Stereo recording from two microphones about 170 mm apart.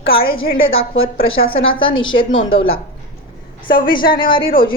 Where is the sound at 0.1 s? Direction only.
60° left (ahead or behind).